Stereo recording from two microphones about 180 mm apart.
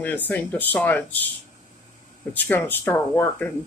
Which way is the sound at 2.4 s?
10° left (ahead or behind).